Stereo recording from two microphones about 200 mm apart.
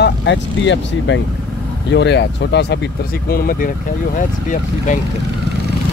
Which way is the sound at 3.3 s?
45° left (ahead or behind).